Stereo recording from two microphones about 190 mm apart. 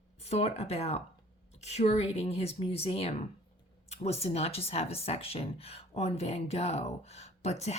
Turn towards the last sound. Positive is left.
turn(degrees=35)  # may be behind; listen again after turning